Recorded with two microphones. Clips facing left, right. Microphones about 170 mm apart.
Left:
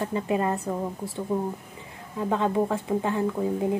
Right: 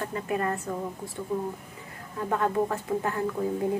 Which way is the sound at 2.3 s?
20° left (ahead or behind).